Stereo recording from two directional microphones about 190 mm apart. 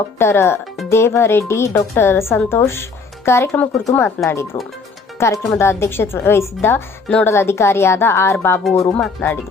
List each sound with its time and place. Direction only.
0.2 s a woman's voice: 15° left (ahead or behind)